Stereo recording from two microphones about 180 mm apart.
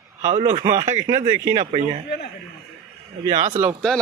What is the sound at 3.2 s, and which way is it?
Speech, 40° right (ahead or behind).